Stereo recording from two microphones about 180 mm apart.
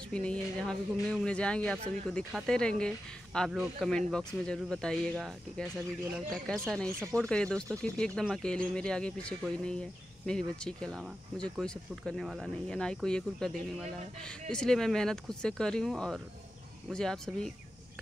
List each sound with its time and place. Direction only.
0.1 s speech: 5° left (ahead or behind)